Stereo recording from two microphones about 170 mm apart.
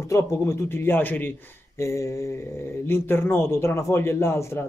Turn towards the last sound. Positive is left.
turn(degrees=15)  # may be behind; listen again after turning